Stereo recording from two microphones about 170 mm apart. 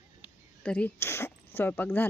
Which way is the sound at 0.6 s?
5° left (ahead or behind).